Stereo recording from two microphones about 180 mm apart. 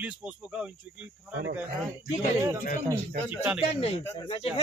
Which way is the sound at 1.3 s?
70° right (ahead or behind).